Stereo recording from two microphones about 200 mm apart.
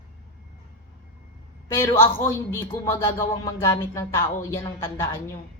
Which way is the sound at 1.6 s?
15° left (ahead or behind).